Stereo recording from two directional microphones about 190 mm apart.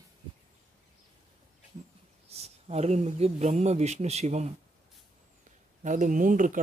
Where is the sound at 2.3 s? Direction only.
35° right (ahead or behind).